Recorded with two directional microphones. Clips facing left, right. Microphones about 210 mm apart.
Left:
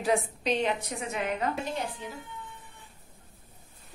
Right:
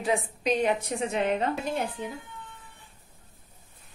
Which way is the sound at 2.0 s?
55° right (ahead or behind).